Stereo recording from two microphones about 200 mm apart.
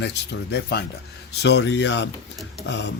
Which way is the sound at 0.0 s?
55° left (ahead or behind).